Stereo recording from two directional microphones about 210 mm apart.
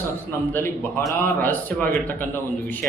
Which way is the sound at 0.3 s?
10° left (ahead or behind).